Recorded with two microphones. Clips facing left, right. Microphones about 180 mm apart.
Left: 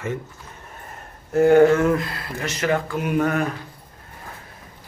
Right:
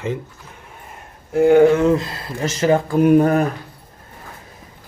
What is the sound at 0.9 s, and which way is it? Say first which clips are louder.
Speech: right 1 dB; 10° right (ahead or behind).